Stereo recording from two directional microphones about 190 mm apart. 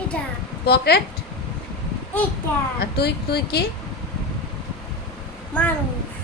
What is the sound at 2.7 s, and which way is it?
Speech, 55° left (ahead or behind).